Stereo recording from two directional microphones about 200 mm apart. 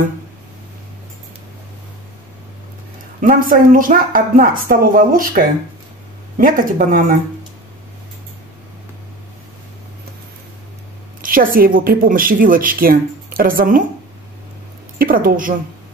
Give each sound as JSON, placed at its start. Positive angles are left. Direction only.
{"t": 3.2, "sound": "speech", "side_deg": -45}
{"t": 11.1, "sound": "speech", "side_deg": -45}
{"t": 15.0, "sound": "speech", "side_deg": -45}